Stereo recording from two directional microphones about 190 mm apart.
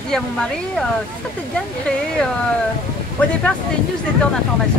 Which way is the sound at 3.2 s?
10° left (ahead or behind).